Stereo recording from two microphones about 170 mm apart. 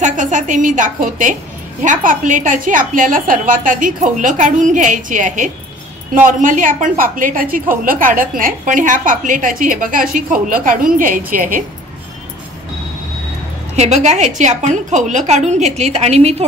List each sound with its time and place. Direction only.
0.0 s a woman's voice: 45° right (ahead or behind)
13.7 s a woman's voice: 40° right (ahead or behind)